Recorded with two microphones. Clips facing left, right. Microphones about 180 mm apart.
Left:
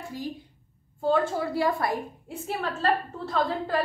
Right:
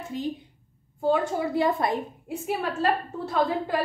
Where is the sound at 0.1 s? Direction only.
20° right (ahead or behind).